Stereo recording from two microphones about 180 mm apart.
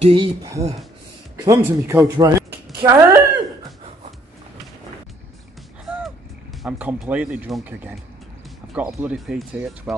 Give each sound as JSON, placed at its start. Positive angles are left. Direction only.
{"t": 0.0, "sound": "speech", "side_deg": -25}
{"t": 5.9, "sound": "artillery fire", "side_deg": -5}
{"t": 6.6, "sound": "speech", "side_deg": -10}